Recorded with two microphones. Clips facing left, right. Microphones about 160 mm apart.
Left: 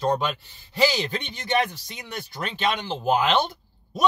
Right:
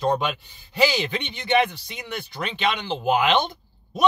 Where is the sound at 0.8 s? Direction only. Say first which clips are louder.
Right 1 dB; 35° left (ahead or behind).